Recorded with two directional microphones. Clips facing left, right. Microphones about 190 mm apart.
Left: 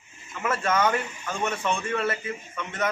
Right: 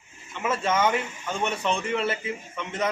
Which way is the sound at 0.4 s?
20° right (ahead or behind).